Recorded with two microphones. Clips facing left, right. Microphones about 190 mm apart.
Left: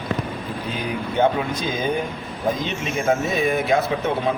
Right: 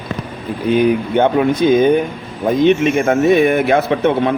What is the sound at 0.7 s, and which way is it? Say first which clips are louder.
Speech: right 14 dB; 65° right (ahead or behind).